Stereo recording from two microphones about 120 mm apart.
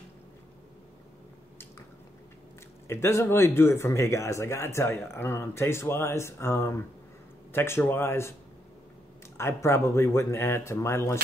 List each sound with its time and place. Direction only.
2.9 s speech: 20° left (ahead or behind)
9.4 s speech: 20° left (ahead or behind)